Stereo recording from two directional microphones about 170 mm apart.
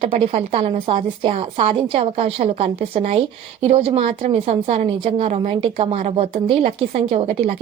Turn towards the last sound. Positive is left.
turn(degrees=-45)  # may be behind; listen again after turning